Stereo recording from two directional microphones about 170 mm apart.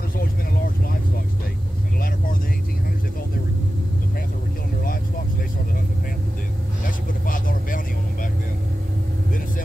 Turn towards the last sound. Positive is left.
turn(degrees=55)  # may be behind; listen again after turning